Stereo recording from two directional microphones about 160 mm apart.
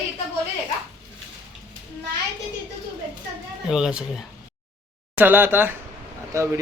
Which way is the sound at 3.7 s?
5° right (ahead or behind).